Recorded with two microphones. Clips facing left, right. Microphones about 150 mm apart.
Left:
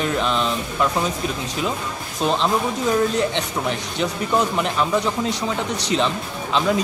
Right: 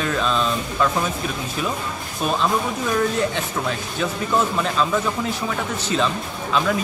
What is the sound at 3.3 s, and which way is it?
A man's voice, 20° left (ahead or behind).